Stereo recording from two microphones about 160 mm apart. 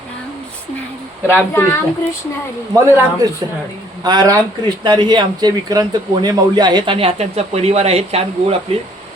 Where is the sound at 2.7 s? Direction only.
15° right (ahead or behind).